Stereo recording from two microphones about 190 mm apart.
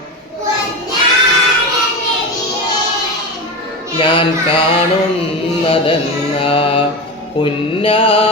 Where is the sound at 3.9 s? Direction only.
30° left (ahead or behind).